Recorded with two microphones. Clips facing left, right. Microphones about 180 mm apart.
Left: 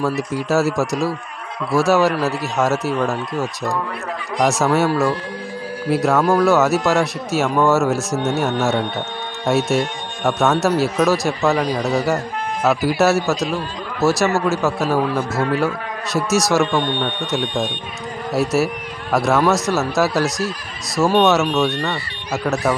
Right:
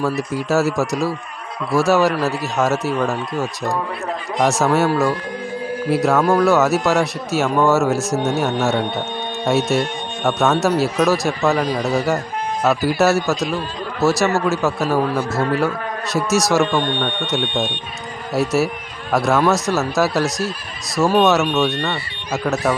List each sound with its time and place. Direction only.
0.0 s a man's voice: centre (ahead or behind)